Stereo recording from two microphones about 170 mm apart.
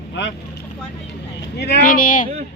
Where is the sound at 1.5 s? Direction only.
85° left.